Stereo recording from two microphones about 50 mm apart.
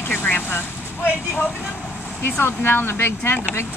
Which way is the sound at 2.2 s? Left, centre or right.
Left.